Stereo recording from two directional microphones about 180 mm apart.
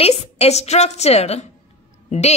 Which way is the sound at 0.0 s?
35° left (ahead or behind).